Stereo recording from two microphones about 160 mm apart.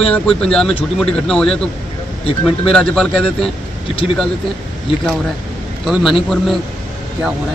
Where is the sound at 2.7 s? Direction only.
5° left (ahead or behind).